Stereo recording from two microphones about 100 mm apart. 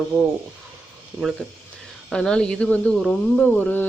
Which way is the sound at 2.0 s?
10° left (ahead or behind).